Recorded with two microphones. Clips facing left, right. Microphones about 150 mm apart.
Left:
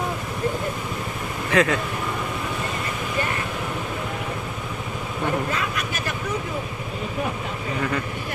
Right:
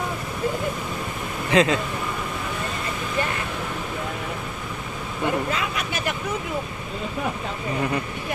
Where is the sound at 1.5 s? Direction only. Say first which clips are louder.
Right 1 dB; 25° right (ahead or behind).